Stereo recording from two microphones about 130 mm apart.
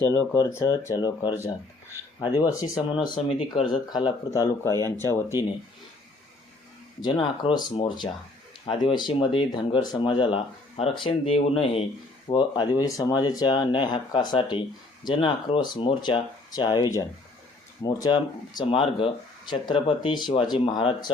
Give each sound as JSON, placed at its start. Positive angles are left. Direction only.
{"t": 0.1, "sound": "speech", "side_deg": 25}
{"t": 2.9, "sound": "speech", "side_deg": 45}
{"t": 4.3, "sound": "speech", "side_deg": 20}
{"t": 7.0, "sound": "speech", "side_deg": 35}
{"t": 12.3, "sound": "speech", "side_deg": 35}